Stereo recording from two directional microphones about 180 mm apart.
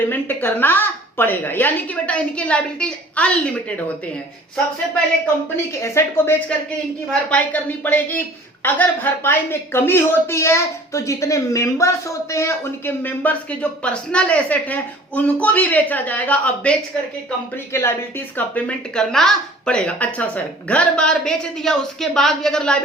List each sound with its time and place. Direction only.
0.1 s speech: 10° left (ahead or behind)
5.7 s a woman's voice: 15° left (ahead or behind)